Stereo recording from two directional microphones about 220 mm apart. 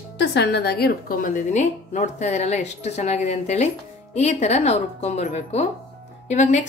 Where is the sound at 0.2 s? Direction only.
50° left (ahead or behind).